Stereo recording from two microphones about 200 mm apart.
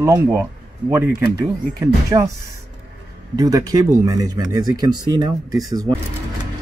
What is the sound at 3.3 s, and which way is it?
Speech, 20° right (ahead or behind).